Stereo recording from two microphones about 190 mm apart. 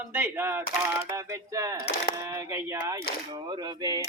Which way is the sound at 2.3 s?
15° right (ahead or behind).